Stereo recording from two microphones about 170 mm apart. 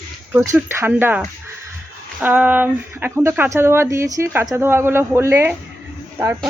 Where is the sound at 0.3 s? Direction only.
15° right (ahead or behind).